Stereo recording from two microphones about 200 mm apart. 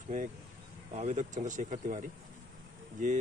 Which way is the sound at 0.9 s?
35° right (ahead or behind).